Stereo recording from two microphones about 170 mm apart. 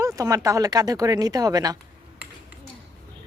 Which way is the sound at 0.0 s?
20° right (ahead or behind).